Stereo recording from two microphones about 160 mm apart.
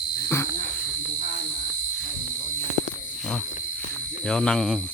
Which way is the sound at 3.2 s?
5° left (ahead or behind).